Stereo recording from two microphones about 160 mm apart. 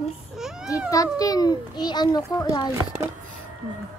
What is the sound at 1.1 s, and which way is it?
A child's voice, 25° left (ahead or behind).